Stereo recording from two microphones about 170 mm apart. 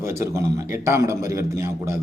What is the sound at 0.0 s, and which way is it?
A man's voice, 15° right (ahead or behind).